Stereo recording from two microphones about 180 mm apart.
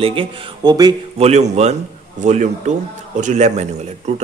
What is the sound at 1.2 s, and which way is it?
Speech, 35° right (ahead or behind).